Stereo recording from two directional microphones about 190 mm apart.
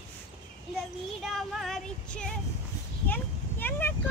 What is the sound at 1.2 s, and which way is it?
Child singing, centre (ahead or behind).